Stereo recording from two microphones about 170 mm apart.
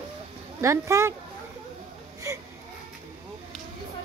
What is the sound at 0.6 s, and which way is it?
Speech, 15° right (ahead or behind).